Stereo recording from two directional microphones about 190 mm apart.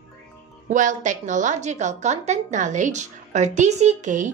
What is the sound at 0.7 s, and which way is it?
A woman's voice, 40° right (ahead or behind).